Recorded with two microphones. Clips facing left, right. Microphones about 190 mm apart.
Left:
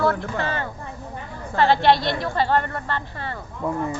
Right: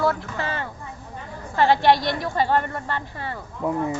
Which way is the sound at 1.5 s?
15° right (ahead or behind).